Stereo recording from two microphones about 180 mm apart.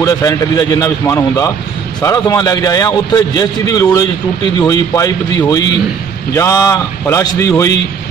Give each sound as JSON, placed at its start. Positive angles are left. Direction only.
{"t": 0.0, "sound": "a man's voice", "side_deg": 20}